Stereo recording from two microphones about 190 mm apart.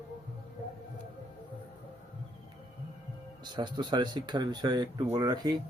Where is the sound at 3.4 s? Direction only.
25° right (ahead or behind).